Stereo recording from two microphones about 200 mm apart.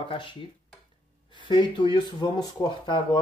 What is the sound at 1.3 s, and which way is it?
Speech, 25° left (ahead or behind).